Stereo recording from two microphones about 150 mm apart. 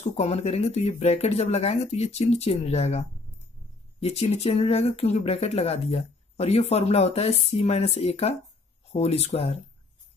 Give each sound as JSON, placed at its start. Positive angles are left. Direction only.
{"t": 0.2, "sound": "speech", "side_deg": 45}